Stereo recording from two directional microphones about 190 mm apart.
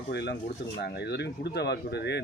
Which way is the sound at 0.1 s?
60° left (ahead or behind).